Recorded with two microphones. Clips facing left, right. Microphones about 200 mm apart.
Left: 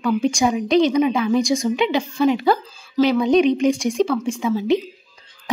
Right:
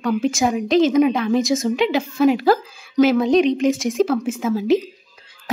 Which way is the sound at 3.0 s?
45° right (ahead or behind).